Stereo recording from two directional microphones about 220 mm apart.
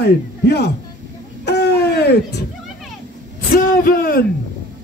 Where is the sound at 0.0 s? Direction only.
50° left (ahead or behind).